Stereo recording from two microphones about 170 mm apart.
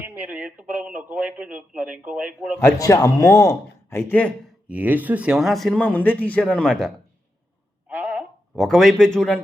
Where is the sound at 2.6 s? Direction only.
20° left (ahead or behind).